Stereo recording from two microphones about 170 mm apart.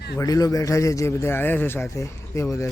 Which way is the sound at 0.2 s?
20° left (ahead or behind).